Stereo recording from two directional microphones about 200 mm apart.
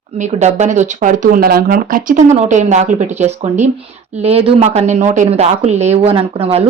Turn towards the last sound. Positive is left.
turn(degrees=-30)  # may be behind; listen again after turning